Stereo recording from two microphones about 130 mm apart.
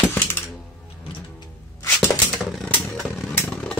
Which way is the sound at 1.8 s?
20° left (ahead or behind).